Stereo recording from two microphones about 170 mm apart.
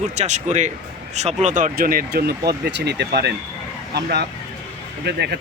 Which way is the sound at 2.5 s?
80° right.